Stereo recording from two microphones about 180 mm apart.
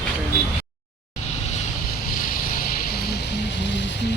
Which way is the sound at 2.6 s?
55° left (ahead or behind).